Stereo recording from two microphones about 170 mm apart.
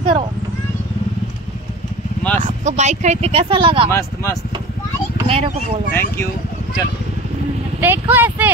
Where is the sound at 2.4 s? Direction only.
45° right (ahead or behind).